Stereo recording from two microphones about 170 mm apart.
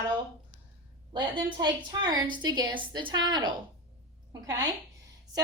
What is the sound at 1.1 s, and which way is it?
Speech, 25° right (ahead or behind).